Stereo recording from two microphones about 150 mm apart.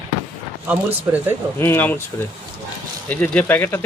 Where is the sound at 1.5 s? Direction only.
15° left (ahead or behind).